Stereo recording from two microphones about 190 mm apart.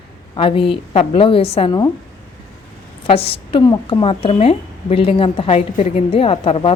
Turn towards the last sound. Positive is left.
turn(degrees=30)  # may be behind; listen again after turning